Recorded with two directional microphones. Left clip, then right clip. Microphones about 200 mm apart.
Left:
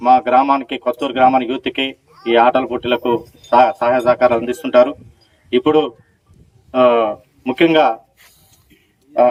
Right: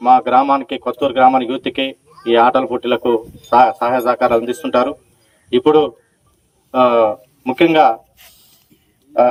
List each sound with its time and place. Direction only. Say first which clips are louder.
0.0 s a man's voice: right 1 dB; 40° right (ahead or behind)